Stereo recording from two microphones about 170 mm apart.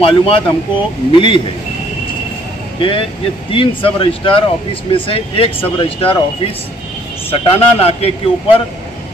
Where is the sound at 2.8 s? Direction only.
30° left (ahead or behind).